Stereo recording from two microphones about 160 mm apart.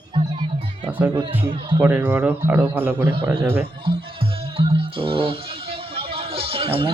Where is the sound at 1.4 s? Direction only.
30° right (ahead or behind).